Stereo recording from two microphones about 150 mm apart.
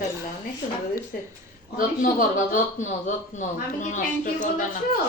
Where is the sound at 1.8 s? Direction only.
60° left (ahead or behind).